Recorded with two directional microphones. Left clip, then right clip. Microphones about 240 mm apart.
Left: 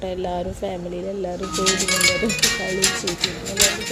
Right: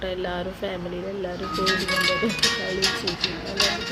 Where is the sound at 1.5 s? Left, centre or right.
Left.